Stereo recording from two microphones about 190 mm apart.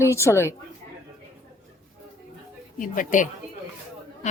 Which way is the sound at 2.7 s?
45° left (ahead or behind).